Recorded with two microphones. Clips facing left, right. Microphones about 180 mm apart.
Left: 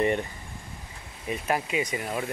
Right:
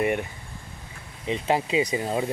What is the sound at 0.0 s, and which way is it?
Speech, 10° right (ahead or behind).